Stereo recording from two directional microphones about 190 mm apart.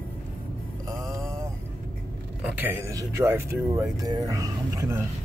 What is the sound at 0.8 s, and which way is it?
Mantra, 20° right (ahead or behind).